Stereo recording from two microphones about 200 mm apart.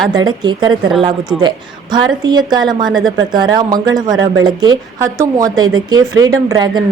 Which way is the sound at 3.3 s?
20° right (ahead or behind).